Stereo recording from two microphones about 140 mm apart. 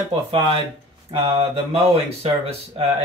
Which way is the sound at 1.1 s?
45° right (ahead or behind).